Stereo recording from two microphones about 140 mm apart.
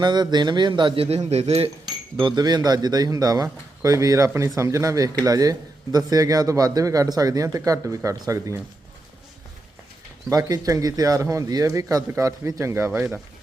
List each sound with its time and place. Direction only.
0.0 s speech: 30° right (ahead or behind); by 1.7 s 45° right (ahead or behind)
2.1 s a man's voice: 35° right (ahead or behind)
10.2 s a man's voice: 25° right (ahead or behind)